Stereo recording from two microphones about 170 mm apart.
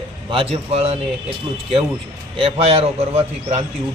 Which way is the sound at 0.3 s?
35° right (ahead or behind).